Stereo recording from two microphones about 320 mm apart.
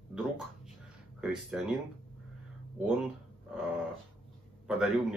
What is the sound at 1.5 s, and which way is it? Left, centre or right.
Speech, centre.